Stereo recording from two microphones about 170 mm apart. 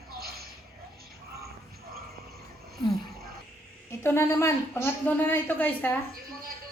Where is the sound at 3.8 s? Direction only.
15° left (ahead or behind).